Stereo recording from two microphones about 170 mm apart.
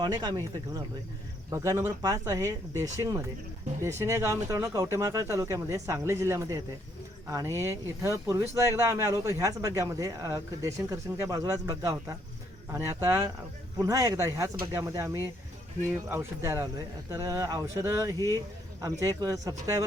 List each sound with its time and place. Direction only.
0.0 s speech: 25° right (ahead or behind)